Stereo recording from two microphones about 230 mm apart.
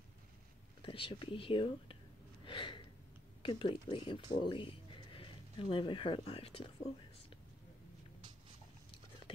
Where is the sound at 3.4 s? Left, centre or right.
Left.